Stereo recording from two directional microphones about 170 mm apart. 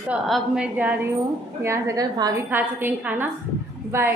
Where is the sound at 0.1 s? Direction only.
5° right (ahead or behind); by 2.4 s 20° right (ahead or behind).